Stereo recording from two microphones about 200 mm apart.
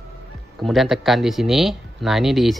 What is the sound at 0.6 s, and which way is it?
Speech, centre (ahead or behind).